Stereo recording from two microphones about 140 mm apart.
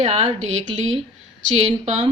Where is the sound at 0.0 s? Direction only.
50° right (ahead or behind).